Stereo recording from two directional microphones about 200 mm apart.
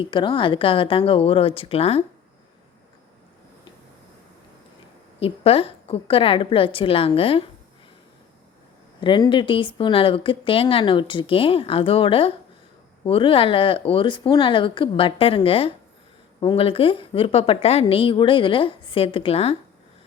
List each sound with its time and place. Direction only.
0.0 s speech: 25° left (ahead or behind)
5.2 s speech: 30° left (ahead or behind)
9.0 s speech: 25° left (ahead or behind)